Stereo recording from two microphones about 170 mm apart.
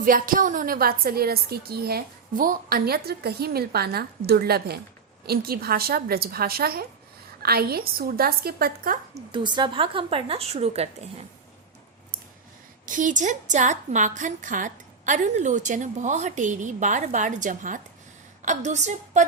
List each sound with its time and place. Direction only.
0.0 s a woman's voice: 55° right (ahead or behind)
9.3 s a woman's voice: 25° right (ahead or behind)
12.8 s a woman's voice: 50° right (ahead or behind)